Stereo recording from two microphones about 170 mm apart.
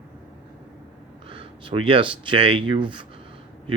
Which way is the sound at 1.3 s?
30° right (ahead or behind).